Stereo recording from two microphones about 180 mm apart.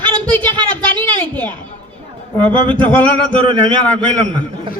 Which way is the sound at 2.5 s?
25° right (ahead or behind).